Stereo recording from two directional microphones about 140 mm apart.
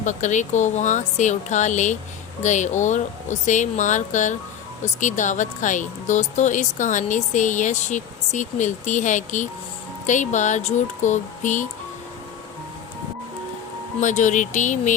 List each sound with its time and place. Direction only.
0.0 s speech: 60° left (ahead or behind)
14.0 s speech: 60° left (ahead or behind)